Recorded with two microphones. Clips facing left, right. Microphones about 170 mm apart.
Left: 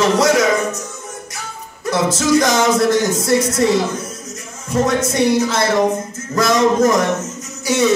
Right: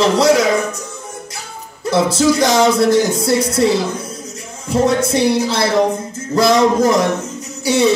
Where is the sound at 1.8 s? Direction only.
30° right (ahead or behind).